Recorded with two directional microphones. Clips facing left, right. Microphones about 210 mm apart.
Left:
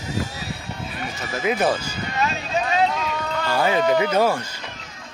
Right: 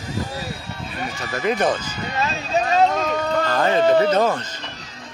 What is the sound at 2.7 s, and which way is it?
Run, 45° right (ahead or behind).